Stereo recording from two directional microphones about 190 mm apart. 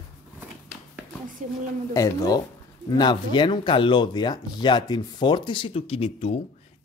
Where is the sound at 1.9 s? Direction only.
15° left (ahead or behind).